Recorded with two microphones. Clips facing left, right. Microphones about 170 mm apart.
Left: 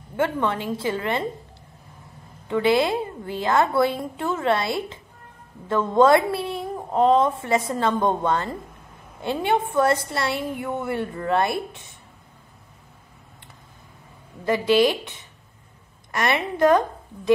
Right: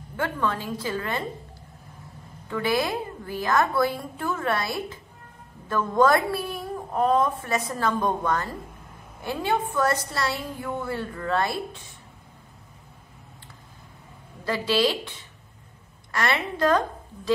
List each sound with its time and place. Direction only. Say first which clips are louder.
0.1 s a woman's voice: left 4 dB; 25° left (ahead or behind)
2.4 s a woman's voice: left 5 dB; 25° left (ahead or behind)
14.4 s a woman's voice: left 6 dB; 20° left (ahead or behind)
16.1 s a woman's voice: left 3 dB; 20° left (ahead or behind)